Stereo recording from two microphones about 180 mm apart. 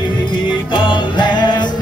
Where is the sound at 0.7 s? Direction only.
25° left (ahead or behind).